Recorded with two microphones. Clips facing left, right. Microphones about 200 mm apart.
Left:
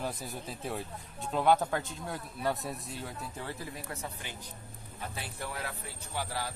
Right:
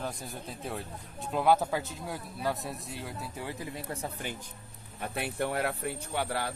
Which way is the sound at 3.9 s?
30° right (ahead or behind).